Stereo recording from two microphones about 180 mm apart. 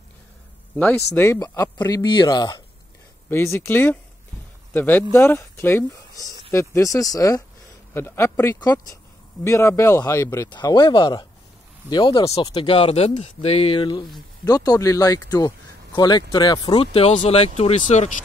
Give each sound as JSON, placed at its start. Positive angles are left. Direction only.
{"t": 0.7, "sound": "speech", "side_deg": 10}
{"t": 3.3, "sound": "speech", "side_deg": 15}